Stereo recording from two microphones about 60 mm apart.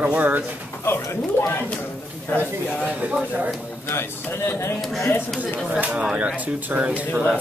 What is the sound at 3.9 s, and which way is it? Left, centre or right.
Speech, left.